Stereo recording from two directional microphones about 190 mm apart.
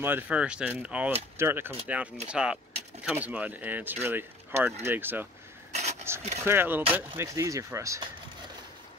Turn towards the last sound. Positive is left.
turn(degrees=-15)  # may be behind; listen again after turning